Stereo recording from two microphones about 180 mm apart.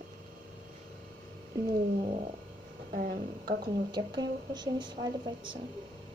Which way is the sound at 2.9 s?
50° right (ahead or behind).